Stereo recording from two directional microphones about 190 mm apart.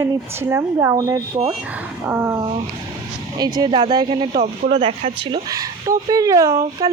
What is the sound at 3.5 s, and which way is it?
Speech, 25° right (ahead or behind).